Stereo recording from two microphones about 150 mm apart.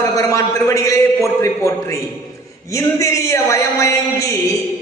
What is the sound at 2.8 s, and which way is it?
A man's voice, 20° left (ahead or behind).